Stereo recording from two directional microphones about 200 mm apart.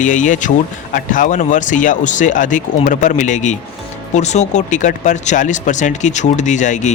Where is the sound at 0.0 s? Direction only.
40° left (ahead or behind).